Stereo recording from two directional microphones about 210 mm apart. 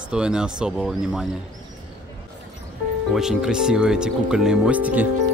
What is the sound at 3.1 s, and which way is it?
Speech, centre (ahead or behind).